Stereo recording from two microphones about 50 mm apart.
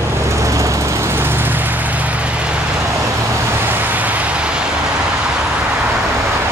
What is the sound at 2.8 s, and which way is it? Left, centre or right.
Vehicle, right.